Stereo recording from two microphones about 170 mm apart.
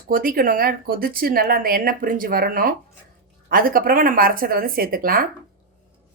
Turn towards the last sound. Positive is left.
turn(degrees=-60)  # may be behind; listen again after turning